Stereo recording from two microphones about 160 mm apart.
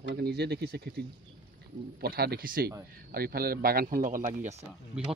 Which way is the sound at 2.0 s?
75° right (ahead or behind).